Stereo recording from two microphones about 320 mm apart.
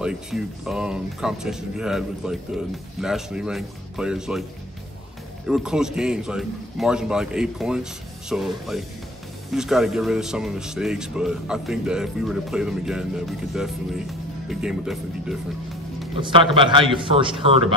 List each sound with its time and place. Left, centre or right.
0.0 s speech: centre
5.5 s speech: centre
16.2 s a man's voice: centre